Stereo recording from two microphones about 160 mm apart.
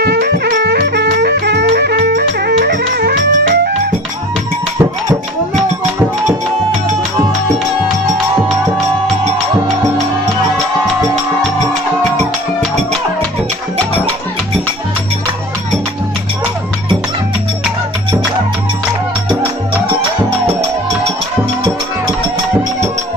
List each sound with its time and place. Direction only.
0.0 s music: 90° right